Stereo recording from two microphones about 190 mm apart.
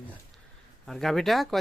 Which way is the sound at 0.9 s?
Centre (ahead or behind).